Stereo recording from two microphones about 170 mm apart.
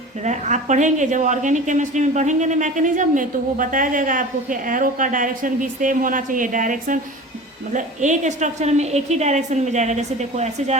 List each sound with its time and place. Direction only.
0.2 s a woman's voice: 45° right (ahead or behind)